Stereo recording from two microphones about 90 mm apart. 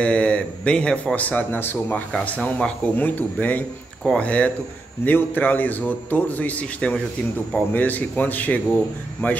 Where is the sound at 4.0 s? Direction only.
10° left (ahead or behind).